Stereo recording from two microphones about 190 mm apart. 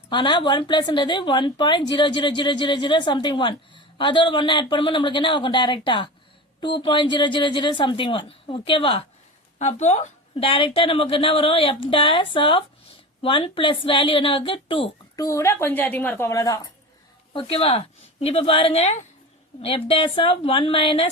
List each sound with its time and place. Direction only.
0.1 s a woman's voice: 25° left (ahead or behind)
17.3 s a woman's voice: 30° left (ahead or behind)